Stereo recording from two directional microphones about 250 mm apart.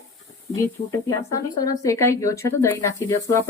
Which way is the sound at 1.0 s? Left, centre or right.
Centre.